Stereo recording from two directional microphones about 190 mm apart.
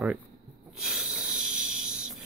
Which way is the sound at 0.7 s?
5° right (ahead or behind).